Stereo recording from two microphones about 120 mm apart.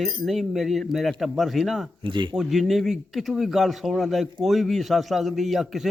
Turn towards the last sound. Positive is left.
turn(degrees=0)  # may be behind; listen again after turning